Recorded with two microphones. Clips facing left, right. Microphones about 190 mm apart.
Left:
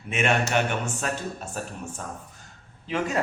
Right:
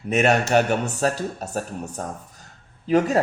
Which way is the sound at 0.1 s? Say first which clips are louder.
Right 6 dB; 40° right (ahead or behind).